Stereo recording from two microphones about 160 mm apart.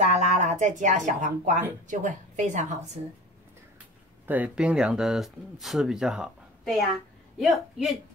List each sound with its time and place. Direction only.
0.0 s a woman's voice: 45° right (ahead or behind)
4.3 s speech: 10° right (ahead or behind)